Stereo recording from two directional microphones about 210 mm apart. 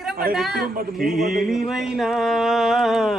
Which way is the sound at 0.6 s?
45° right (ahead or behind).